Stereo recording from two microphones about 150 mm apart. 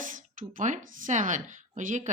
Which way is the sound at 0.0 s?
60° right (ahead or behind).